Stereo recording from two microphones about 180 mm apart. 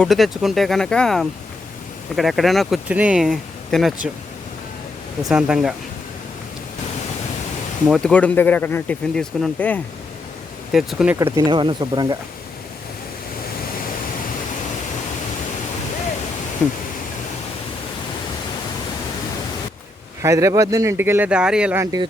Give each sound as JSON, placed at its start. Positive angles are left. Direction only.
{"t": 0.0, "sound": "speech", "side_deg": 0}
{"t": 5.3, "sound": "speech", "side_deg": -5}
{"t": 7.9, "sound": "speech", "side_deg": 0}
{"t": 10.7, "sound": "speech", "side_deg": 0}
{"t": 11.2, "sound": "speech", "side_deg": -20}
{"t": 20.2, "sound": "speech", "side_deg": -20}